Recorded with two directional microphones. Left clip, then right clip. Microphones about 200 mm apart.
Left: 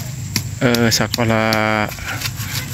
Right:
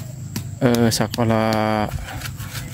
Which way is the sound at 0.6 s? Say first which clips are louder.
Left 2 dB; 20° right (ahead or behind).